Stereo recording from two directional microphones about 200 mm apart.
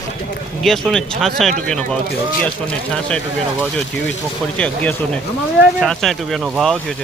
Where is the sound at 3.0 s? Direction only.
5° left (ahead or behind).